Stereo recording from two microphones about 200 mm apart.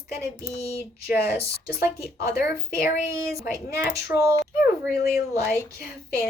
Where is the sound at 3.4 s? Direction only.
5° right (ahead or behind).